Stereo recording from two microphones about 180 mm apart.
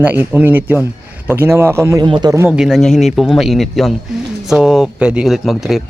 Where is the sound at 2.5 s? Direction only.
5° right (ahead or behind).